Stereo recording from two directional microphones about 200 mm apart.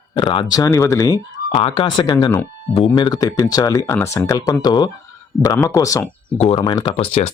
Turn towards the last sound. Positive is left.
turn(degrees=30)  # may be behind; listen again after turning